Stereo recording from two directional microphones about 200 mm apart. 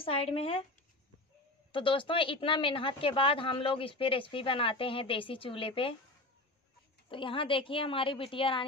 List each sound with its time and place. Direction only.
0.0 s speech: 30° left (ahead or behind)
1.7 s speech: 25° left (ahead or behind)
7.1 s speech: 25° left (ahead or behind)